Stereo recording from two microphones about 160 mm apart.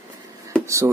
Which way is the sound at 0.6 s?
20° right (ahead or behind).